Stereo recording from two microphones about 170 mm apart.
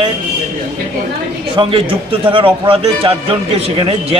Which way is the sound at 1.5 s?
30° right (ahead or behind).